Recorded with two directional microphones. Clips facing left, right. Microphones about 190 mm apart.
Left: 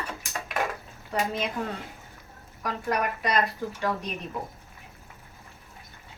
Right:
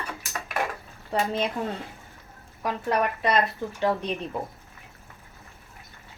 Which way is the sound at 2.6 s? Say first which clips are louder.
Right 3 dB; 25° right (ahead or behind).